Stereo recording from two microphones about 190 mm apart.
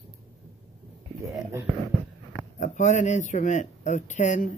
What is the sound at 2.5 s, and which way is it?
Speech, 40° left (ahead or behind).